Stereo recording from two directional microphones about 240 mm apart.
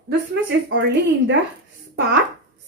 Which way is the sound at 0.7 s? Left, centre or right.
Right.